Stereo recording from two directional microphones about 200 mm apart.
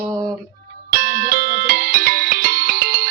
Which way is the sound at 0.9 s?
45° right (ahead or behind).